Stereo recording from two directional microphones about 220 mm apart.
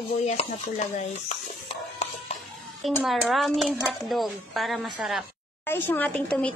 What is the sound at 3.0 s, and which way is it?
Speech, centre (ahead or behind).